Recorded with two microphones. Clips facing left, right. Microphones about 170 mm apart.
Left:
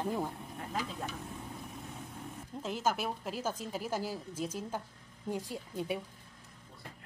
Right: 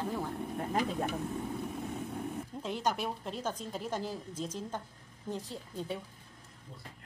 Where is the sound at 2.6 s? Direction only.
5° left (ahead or behind).